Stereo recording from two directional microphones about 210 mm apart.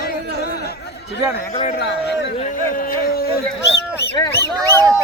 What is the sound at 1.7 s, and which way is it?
Speech, 50° left (ahead or behind).